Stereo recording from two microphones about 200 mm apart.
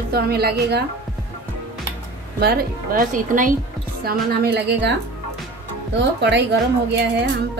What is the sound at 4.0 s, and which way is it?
Speech, 50° right (ahead or behind).